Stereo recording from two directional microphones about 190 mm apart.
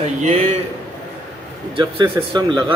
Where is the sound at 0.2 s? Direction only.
35° right (ahead or behind).